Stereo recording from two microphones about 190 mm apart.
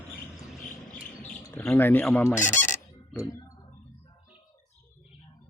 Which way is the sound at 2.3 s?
40° left (ahead or behind).